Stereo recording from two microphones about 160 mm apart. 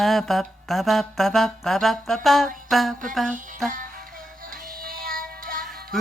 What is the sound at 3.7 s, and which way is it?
Music, 60° right (ahead or behind).